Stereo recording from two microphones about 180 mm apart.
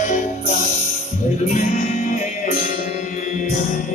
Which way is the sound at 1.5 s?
45° left (ahead or behind).